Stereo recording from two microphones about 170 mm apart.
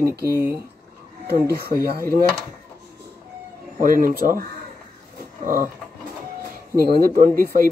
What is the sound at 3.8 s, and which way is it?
Speech, 55° right (ahead or behind).